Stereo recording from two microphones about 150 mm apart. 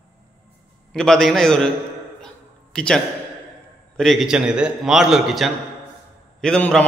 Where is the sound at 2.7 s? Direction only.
5° left (ahead or behind).